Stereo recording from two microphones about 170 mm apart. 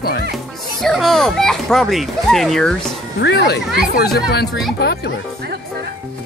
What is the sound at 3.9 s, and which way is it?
Speech, 70° left (ahead or behind).